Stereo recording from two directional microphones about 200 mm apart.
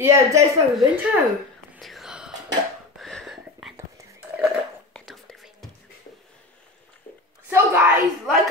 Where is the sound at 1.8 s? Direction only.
Centre (ahead or behind).